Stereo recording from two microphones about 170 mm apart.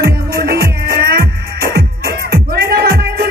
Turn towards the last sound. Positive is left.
turn(degrees=-65)  # may be behind; listen again after turning